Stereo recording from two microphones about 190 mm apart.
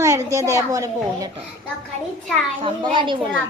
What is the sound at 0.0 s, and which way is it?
A woman's voice, 15° right (ahead or behind).